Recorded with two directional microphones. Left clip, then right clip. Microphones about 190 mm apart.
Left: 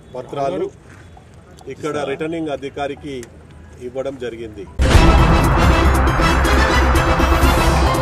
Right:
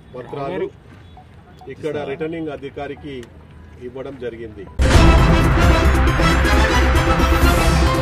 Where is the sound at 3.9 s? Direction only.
35° left (ahead or behind).